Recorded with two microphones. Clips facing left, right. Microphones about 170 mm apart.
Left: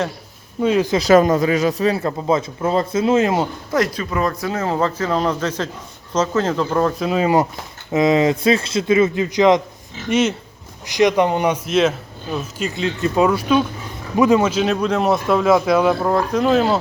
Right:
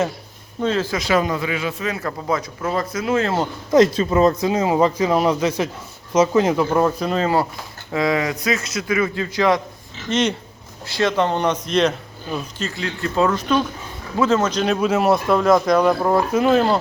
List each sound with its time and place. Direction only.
0.6 s speech: 15° left (ahead or behind)
0.9 s speech: 40° left (ahead or behind); by 3.4 s 15° left (ahead or behind)
3.7 s speech: 25° right (ahead or behind)
7.0 s speech: 10° left (ahead or behind)
10.1 s speech: 5° left (ahead or behind)
10.8 s speech: 15° left (ahead or behind)
12.5 s a man's voice: 15° left (ahead or behind); by 16.7 s centre (ahead or behind)